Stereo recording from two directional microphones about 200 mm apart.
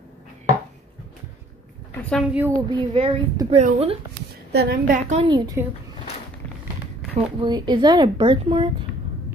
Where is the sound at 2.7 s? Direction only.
30° right (ahead or behind).